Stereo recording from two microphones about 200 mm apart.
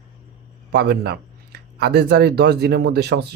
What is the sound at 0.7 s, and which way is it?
Speech, 55° right (ahead or behind).